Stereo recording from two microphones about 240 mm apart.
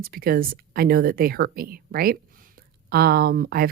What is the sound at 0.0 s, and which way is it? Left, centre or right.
Speech, right.